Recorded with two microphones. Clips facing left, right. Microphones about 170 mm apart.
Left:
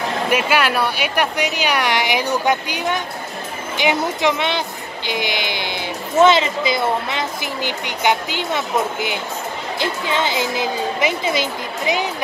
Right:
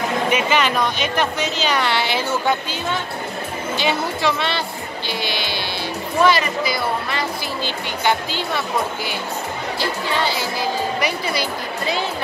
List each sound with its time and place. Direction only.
0.5 s speech: 10° left (ahead or behind)